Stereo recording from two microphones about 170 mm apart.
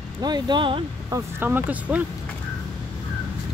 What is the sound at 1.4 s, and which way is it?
Speech, 10° right (ahead or behind).